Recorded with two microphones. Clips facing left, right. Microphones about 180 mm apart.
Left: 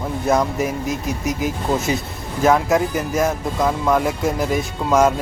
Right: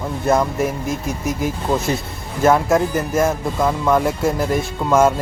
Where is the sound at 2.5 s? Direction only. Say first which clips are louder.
Right 1 dB; centre (ahead or behind).